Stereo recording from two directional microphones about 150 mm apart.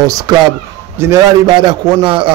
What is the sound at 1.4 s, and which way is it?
Speech, 30° right (ahead or behind).